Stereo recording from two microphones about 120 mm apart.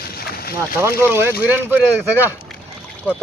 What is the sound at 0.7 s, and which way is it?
Speech, 20° right (ahead or behind).